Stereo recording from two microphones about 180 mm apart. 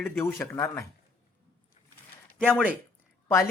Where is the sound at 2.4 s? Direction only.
5° left (ahead or behind).